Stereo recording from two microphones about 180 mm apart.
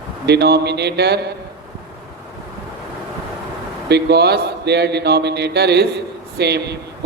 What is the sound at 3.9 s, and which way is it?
A man's voice, 65° right (ahead or behind).